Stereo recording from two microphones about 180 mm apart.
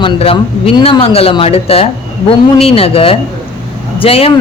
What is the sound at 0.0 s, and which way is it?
Speech, 30° left (ahead or behind).